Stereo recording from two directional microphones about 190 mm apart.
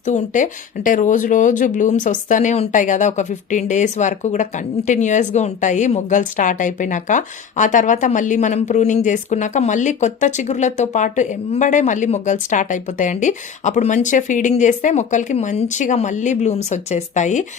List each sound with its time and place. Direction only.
0.0 s speech: 40° left (ahead or behind)